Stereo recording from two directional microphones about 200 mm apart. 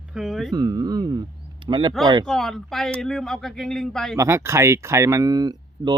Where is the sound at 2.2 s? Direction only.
Centre (ahead or behind).